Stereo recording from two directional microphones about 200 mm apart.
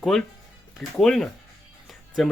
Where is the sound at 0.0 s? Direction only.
Centre (ahead or behind).